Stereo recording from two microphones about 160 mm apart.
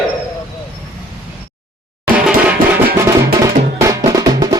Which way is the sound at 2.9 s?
20° right (ahead or behind).